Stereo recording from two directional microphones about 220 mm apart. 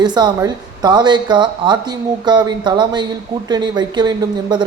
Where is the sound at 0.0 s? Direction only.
20° right (ahead or behind).